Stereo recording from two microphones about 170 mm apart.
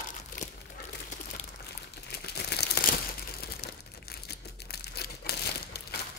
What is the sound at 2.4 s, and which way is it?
Crumpling, 70° left (ahead or behind).